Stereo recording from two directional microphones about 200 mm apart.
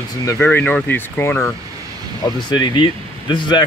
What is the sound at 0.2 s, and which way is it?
Speech, 15° left (ahead or behind).